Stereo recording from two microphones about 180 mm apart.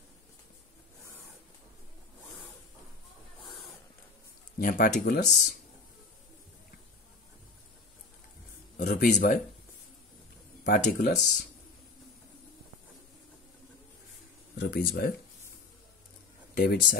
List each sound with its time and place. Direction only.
4.6 s speech: 55° left (ahead or behind)
8.7 s speech: 45° left (ahead or behind)
10.6 s speech: 45° left (ahead or behind)
14.6 s speech: 60° left (ahead or behind)
16.5 s speech: 55° left (ahead or behind)